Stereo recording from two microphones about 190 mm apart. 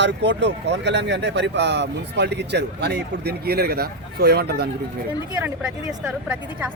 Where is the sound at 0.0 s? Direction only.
65° right (ahead or behind).